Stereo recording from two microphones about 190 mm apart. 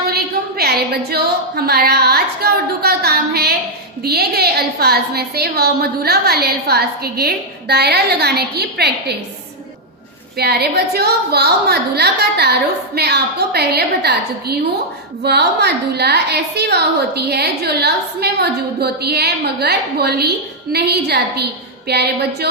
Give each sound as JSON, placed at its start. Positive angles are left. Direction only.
{"t": 0.1, "sound": "a woman's voice", "side_deg": -55}
{"t": 10.3, "sound": "a woman's voice", "side_deg": -55}